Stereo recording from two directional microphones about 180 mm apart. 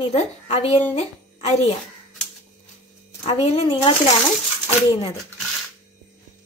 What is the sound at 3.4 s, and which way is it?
Speech, 35° left (ahead or behind).